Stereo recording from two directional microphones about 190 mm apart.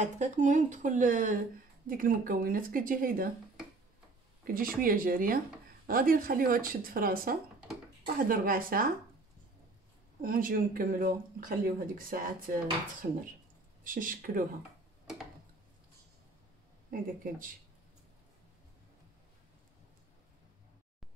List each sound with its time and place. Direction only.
0.0 s a woman's voice: 40° right (ahead or behind)
4.5 s speech: 50° right (ahead or behind)
10.2 s speech: 50° right (ahead or behind)
13.8 s speech: 45° right (ahead or behind)
16.9 s speech: 45° right (ahead or behind)